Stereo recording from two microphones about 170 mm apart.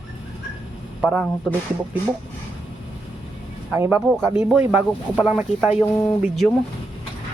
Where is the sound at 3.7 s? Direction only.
15° right (ahead or behind).